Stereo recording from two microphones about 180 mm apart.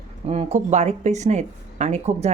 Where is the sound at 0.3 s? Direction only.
35° right (ahead or behind).